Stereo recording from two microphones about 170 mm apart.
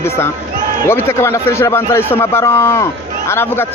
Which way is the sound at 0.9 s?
15° left (ahead or behind).